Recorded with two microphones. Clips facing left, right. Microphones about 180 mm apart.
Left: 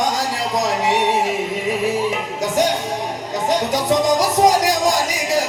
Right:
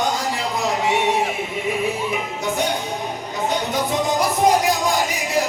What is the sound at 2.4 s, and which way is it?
Music, 90° left.